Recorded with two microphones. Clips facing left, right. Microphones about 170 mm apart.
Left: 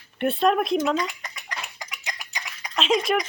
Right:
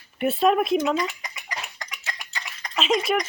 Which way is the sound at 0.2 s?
5° right (ahead or behind).